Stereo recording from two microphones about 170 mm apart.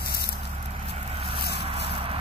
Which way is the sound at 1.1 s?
30° right (ahead or behind).